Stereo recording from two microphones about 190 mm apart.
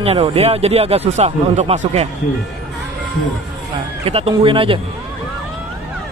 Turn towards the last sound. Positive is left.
turn(degrees=-30)  # may be behind; listen again after turning